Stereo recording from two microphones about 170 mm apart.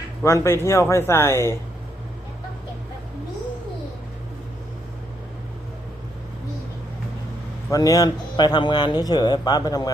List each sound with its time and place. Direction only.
0.2 s a man's voice: 15° left (ahead or behind)
7.7 s speech: 20° left (ahead or behind)